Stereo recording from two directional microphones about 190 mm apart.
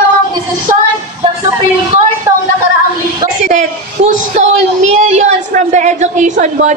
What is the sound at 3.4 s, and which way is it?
A woman's voice, 40° right (ahead or behind).